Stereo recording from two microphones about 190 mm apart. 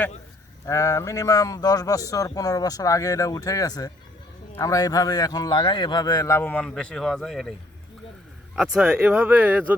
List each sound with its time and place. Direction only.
0.6 s a man's voice: 15° left (ahead or behind)
8.5 s speech: 5° right (ahead or behind)